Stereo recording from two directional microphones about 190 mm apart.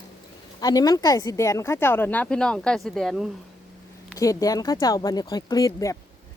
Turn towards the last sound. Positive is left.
turn(degrees=15)  # may be behind; listen again after turning